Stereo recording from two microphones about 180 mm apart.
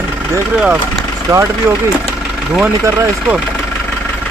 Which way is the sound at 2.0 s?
5° right (ahead or behind).